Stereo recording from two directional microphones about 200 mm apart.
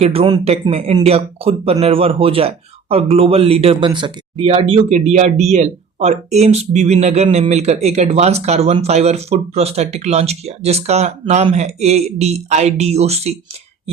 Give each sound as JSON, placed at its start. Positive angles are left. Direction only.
{"t": 0.0, "sound": "speech", "side_deg": -30}